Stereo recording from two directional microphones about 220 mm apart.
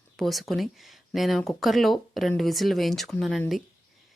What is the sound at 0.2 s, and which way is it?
Speech, centre (ahead or behind).